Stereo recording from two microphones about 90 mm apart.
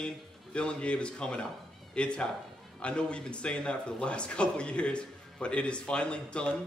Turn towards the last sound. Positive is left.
turn(degrees=10)  # may be behind; listen again after turning